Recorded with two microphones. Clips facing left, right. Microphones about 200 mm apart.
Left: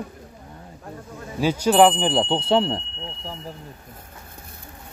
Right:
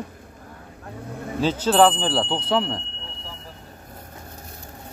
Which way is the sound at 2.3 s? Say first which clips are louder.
Left 3 dB; 30° left (ahead or behind).